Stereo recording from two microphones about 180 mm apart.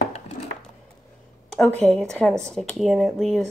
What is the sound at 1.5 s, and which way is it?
Speech, 5° left (ahead or behind).